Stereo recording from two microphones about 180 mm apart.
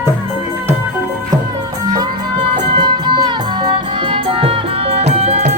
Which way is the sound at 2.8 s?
25° right (ahead or behind).